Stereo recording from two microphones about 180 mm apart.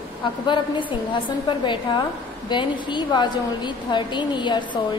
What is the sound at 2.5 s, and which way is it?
A woman's voice, 25° left (ahead or behind).